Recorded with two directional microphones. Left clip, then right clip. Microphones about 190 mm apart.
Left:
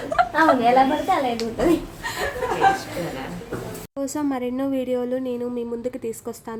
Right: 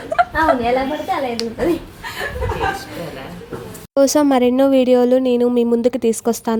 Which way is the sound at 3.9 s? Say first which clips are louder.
Right 13 dB; 45° right (ahead or behind).